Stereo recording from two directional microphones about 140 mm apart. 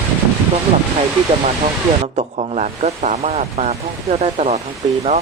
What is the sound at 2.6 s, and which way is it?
Speech, 55° right (ahead or behind).